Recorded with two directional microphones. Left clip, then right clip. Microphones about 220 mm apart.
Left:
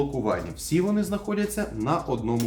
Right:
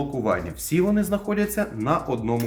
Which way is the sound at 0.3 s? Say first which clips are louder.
Right 2 dB; 20° right (ahead or behind).